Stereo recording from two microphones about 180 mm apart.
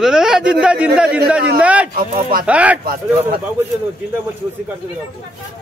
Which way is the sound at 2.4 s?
5° right (ahead or behind).